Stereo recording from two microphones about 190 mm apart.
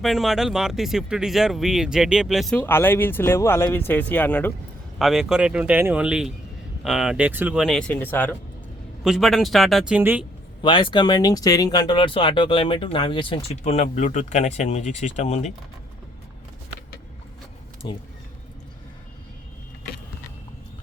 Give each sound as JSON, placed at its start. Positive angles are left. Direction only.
{"t": 0.0, "sound": "speech", "side_deg": 0}
{"t": 9.0, "sound": "a woman's voice", "side_deg": 0}
{"t": 10.6, "sound": "speech", "side_deg": 25}
{"t": 17.8, "sound": "speech", "side_deg": 25}